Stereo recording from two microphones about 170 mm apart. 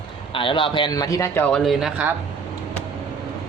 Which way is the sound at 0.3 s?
30° left (ahead or behind).